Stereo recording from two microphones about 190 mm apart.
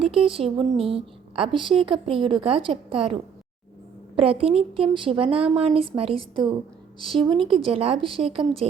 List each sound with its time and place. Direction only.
0.0 s speech: 30° right (ahead or behind)